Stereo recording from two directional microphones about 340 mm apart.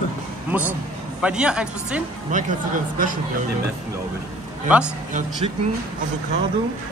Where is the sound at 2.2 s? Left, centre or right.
Right.